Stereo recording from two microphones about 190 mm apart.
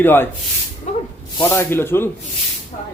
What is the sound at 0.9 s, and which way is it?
Speech, 35° left (ahead or behind).